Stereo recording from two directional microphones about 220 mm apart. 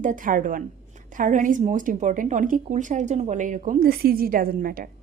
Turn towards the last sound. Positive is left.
turn(degrees=-40)  # may be behind; listen again after turning